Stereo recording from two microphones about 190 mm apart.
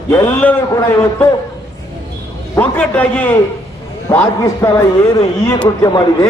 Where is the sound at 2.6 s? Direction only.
10° left (ahead or behind).